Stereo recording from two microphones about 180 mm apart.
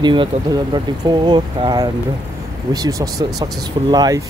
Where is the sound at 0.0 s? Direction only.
25° right (ahead or behind).